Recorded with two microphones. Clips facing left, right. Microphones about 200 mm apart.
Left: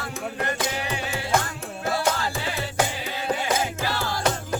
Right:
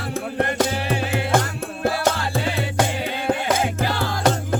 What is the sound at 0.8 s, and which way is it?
Music, 55° right (ahead or behind).